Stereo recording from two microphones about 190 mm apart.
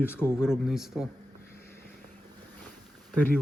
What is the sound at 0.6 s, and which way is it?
Speech, centre (ahead or behind).